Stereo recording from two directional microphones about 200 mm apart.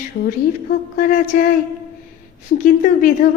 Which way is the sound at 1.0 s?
45° left (ahead or behind).